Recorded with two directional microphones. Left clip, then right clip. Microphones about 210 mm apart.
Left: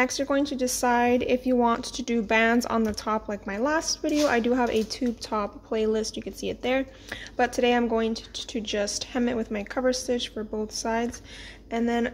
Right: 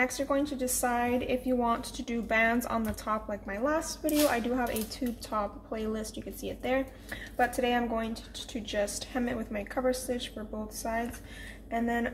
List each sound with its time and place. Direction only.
0.0 s a woman's voice: 40° left (ahead or behind)